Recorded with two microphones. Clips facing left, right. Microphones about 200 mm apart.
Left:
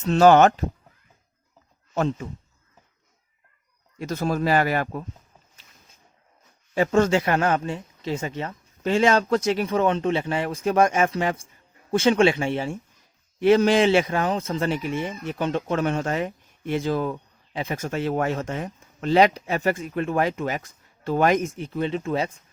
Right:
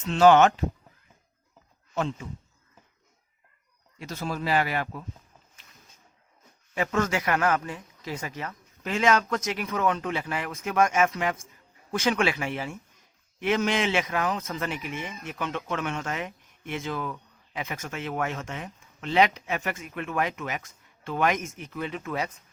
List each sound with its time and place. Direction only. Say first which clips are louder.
0.0 s speech: left 3 dB; 40° left (ahead or behind)
2.0 s speech: left 5 dB; 40° left (ahead or behind)
3.9 s speech: left 7 dB; 45° left (ahead or behind)
6.7 s a man's voice: left 7 dB; 30° left (ahead or behind)